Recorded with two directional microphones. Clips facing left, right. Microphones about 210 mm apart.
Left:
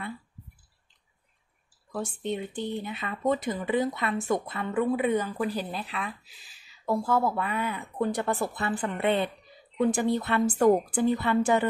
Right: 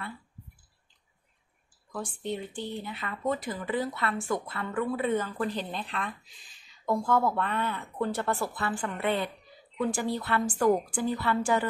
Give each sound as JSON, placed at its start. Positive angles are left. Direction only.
{"t": 1.9, "sound": "a woman's voice", "side_deg": 25}